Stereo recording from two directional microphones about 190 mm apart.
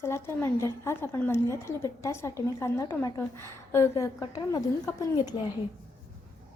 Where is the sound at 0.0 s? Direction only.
15° left (ahead or behind).